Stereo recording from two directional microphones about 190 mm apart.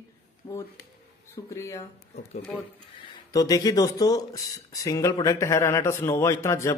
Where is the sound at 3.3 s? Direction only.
20° left (ahead or behind).